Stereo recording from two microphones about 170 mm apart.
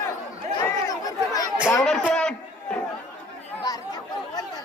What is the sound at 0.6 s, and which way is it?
Chatter, 20° left (ahead or behind).